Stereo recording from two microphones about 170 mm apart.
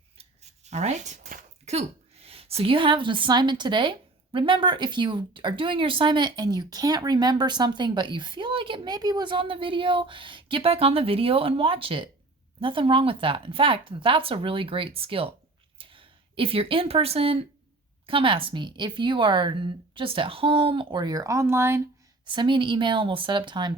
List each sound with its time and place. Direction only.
0.2 s speech: 40° right (ahead or behind); by 21.8 s 15° right (ahead or behind)
22.3 s speech: 30° right (ahead or behind)